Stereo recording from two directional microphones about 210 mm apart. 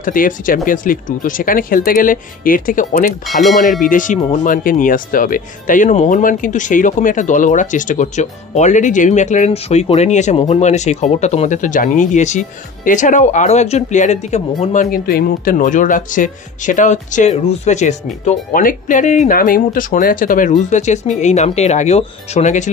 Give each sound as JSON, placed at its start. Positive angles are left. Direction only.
{"t": 0.0, "sound": "speech", "side_deg": 40}
{"t": 3.3, "sound": "speech", "side_deg": 0}
{"t": 3.8, "sound": "speech", "side_deg": 40}